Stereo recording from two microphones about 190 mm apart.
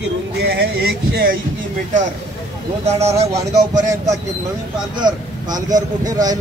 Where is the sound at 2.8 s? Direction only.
35° right (ahead or behind).